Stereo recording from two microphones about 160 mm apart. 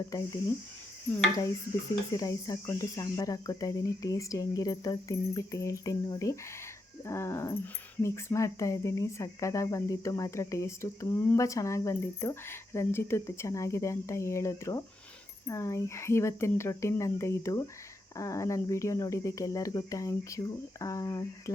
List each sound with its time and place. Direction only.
0.1 s speech: 20° left (ahead or behind)
2.1 s speech: 20° left (ahead or behind)